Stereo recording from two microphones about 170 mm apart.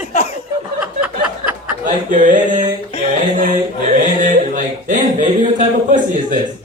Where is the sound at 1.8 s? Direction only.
50° right (ahead or behind).